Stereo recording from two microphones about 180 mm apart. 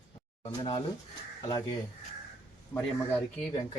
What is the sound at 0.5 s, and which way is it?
Speech, 30° left (ahead or behind).